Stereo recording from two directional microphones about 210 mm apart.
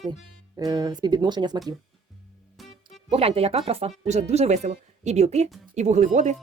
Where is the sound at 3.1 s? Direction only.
30° right (ahead or behind).